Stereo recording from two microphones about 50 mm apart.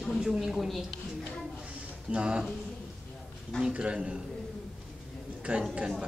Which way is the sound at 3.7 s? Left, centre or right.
Centre.